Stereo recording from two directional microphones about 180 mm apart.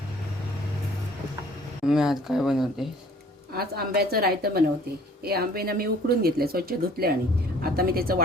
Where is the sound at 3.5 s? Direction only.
60° right (ahead or behind).